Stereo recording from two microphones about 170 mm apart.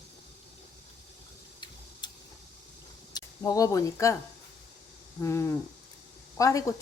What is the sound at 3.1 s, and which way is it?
Speech, 20° left (ahead or behind).